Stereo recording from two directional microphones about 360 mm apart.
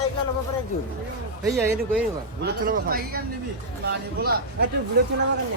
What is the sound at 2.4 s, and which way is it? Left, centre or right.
A man's voice, right.